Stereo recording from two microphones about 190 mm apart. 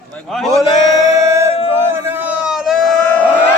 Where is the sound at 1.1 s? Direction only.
15° right (ahead or behind); by 3.3 s 5° left (ahead or behind).